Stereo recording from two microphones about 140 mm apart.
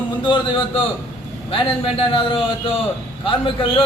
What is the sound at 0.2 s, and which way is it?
A man's voice, 35° left (ahead or behind).